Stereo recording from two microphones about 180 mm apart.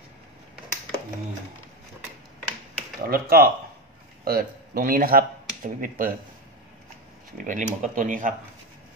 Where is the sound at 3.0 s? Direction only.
60° right (ahead or behind).